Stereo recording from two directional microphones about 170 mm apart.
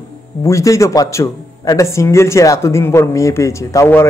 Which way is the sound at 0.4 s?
20° left (ahead or behind).